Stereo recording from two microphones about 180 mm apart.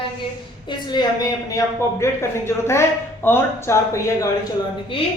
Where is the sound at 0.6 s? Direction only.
25° left (ahead or behind).